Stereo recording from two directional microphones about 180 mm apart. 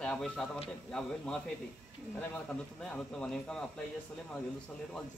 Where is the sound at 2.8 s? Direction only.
5° left (ahead or behind).